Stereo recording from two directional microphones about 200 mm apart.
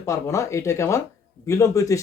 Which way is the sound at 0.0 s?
15° left (ahead or behind).